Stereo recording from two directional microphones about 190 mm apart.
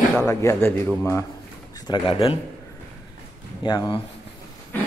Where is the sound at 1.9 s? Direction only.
25° left (ahead or behind).